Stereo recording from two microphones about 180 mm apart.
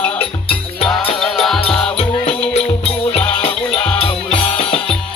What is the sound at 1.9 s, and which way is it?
Music, 35° left (ahead or behind).